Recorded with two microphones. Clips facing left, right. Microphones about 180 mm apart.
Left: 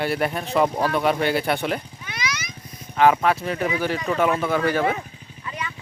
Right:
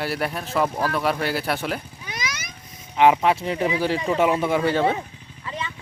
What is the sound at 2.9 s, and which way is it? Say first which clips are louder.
Speech: right 1 dB; 20° right (ahead or behind).